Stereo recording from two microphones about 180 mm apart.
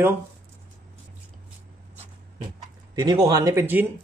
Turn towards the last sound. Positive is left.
turn(degrees=-15)  # may be behind; listen again after turning